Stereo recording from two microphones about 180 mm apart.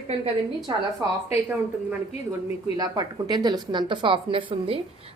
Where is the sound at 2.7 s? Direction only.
20° right (ahead or behind).